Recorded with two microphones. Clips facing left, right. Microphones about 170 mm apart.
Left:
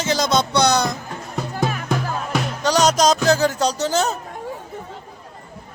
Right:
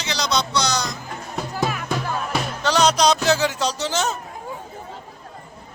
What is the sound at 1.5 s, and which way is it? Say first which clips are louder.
Music: left 2 dB; 45° left (ahead or behind).